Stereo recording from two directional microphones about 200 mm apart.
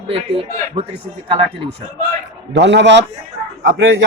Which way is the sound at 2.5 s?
60° right (ahead or behind).